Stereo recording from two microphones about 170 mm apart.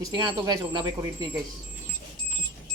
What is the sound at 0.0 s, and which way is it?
Speech, 25° right (ahead or behind).